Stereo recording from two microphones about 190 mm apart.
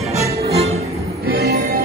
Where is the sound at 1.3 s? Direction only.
55° right (ahead or behind).